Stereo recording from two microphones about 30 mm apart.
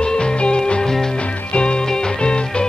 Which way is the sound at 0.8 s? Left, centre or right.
Centre.